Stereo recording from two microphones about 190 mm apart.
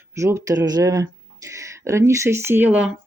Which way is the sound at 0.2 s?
15° right (ahead or behind).